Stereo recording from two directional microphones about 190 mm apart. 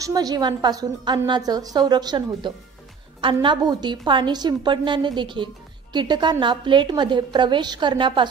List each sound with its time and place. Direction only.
0.0 s a woman's voice: 20° right (ahead or behind)